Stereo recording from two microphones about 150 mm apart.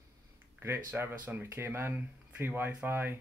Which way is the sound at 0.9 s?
15° right (ahead or behind).